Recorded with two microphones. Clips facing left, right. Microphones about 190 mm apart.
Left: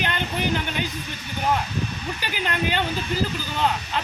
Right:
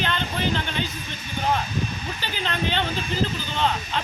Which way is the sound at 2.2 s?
10° left (ahead or behind).